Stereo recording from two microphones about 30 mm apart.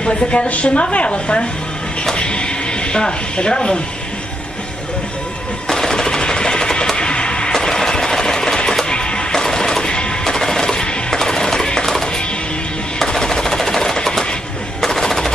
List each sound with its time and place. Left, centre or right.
0.1 s a woman's voice: left
2.1 s a sound: left
5.7 s a sound: centre
7.0 s music: left
7.5 s music: centre; by 9.2 s left
9.3 s music: left
13.0 s chopping: centre
14.8 s machine gun: centre